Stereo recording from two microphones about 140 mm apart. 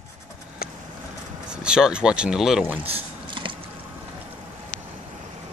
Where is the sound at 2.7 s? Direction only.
35° right (ahead or behind).